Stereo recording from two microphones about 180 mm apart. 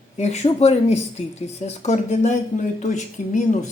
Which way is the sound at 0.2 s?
40° left (ahead or behind).